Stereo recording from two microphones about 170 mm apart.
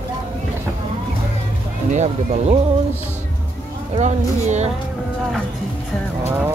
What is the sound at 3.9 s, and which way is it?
Speech, 45° right (ahead or behind).